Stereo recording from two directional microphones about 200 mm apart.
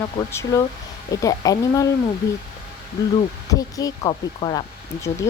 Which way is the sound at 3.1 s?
15° left (ahead or behind).